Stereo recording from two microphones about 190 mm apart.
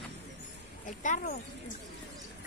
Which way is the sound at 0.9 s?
40° left (ahead or behind).